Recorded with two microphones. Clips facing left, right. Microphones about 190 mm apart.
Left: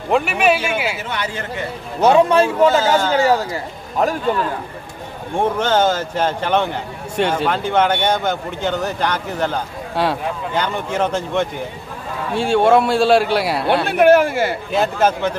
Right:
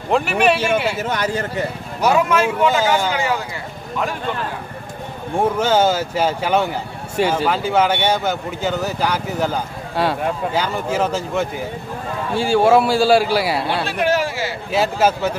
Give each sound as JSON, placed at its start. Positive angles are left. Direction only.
{"t": 0.1, "sound": "speech", "side_deg": 0}
{"t": 0.9, "sound": "speech", "side_deg": -40}
{"t": 2.0, "sound": "speech", "side_deg": 25}
{"t": 4.0, "sound": "speech", "side_deg": 40}
{"t": 5.4, "sound": "speech", "side_deg": -10}
{"t": 13.8, "sound": "speech", "side_deg": 55}
{"t": 14.7, "sound": "speech", "side_deg": -5}